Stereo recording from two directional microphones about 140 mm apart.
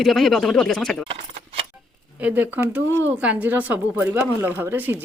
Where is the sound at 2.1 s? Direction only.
10° right (ahead or behind).